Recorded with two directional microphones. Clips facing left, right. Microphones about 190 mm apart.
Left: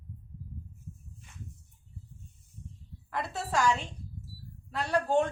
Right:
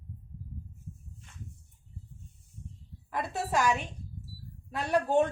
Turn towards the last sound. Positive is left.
turn(degrees=-15)  # may be behind; listen again after turning